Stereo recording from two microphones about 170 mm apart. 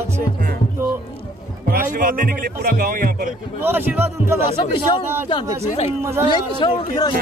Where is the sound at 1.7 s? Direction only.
55° right (ahead or behind).